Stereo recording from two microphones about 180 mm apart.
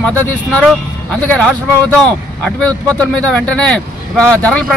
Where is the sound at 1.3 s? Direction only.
5° left (ahead or behind).